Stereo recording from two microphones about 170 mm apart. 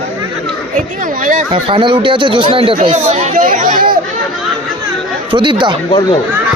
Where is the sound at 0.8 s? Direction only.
50° right (ahead or behind).